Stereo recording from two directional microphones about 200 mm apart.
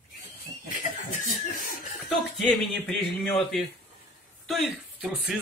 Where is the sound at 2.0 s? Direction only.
Centre (ahead or behind).